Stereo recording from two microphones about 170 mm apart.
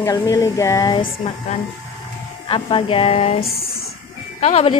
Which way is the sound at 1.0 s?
40° left (ahead or behind).